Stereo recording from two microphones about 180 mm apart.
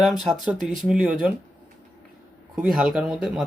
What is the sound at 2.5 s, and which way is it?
Speech, 5° right (ahead or behind).